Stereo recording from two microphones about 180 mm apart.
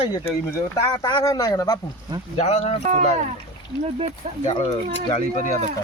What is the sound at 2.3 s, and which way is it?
Speech, 35° left (ahead or behind).